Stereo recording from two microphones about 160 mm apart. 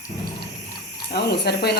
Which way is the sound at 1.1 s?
90° left.